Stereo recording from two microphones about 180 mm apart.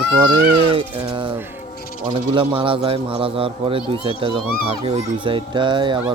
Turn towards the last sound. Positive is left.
turn(degrees=-25)  # may be behind; listen again after turning